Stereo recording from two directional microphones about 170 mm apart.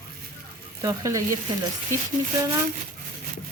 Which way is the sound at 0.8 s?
20° right (ahead or behind).